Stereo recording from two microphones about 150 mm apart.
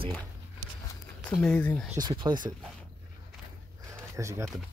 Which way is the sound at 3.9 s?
20° right (ahead or behind).